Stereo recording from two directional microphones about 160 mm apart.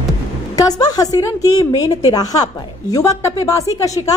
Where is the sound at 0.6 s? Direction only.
25° left (ahead or behind).